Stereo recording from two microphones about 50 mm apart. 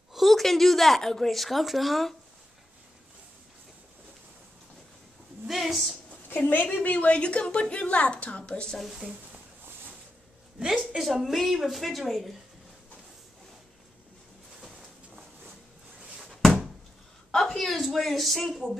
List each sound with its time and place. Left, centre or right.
0.1 s a woman's voice: centre
5.5 s a woman's voice: centre
6.7 s a woman's voice: left
8.6 s a woman's voice: centre
11.0 s a woman's voice: centre
16.3 s a sound: centre